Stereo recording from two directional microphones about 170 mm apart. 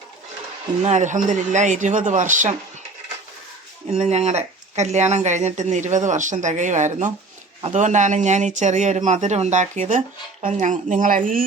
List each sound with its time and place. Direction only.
0.8 s speech: 45° right (ahead or behind)
3.9 s speech: 40° right (ahead or behind)